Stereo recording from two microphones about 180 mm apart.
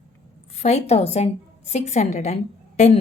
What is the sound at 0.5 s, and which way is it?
Speech, 35° left (ahead or behind).